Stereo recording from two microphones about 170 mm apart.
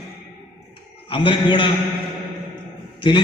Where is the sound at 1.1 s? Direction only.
30° left (ahead or behind).